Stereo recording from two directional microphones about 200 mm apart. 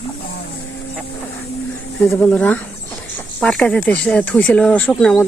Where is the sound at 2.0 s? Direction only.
10° left (ahead or behind).